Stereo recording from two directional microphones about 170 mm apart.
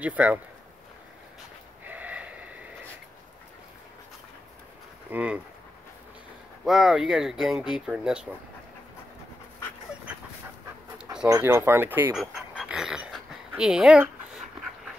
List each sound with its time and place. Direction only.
0.0 s speech: 10° right (ahead or behind)
1.9 s a sound: 10° right (ahead or behind)
5.1 s speech: 10° right (ahead or behind)
6.6 s speech: centre (ahead or behind)
11.2 s speech: 20° right (ahead or behind)
12.2 s a sound: 5° right (ahead or behind)